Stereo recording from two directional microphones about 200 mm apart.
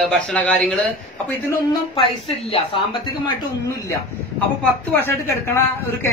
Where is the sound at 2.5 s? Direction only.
30° left (ahead or behind).